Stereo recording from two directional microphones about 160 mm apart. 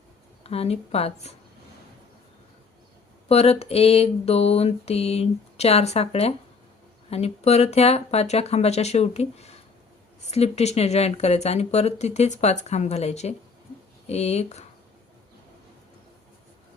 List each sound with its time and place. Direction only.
0.4 s mantra: 40° left (ahead or behind)
3.2 s mantra: 40° left (ahead or behind)
10.2 s speech: 40° left (ahead or behind)